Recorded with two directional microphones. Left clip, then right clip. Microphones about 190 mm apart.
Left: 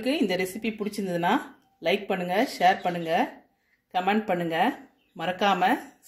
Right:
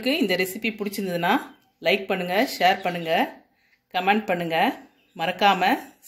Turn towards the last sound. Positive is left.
turn(degrees=0)  # may be behind; listen again after turning